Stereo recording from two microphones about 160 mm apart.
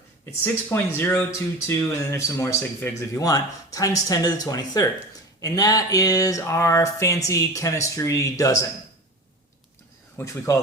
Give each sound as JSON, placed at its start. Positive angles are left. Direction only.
{"t": 0.4, "sound": "speech", "side_deg": 10}
{"t": 10.2, "sound": "speech", "side_deg": 20}